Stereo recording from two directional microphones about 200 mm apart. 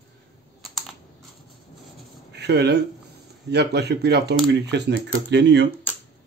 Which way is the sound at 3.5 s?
55° right (ahead or behind).